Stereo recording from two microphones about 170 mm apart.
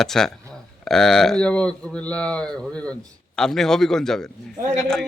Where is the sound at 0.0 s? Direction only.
Centre (ahead or behind).